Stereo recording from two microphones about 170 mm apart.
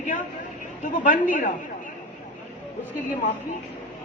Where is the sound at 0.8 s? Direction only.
50° left (ahead or behind).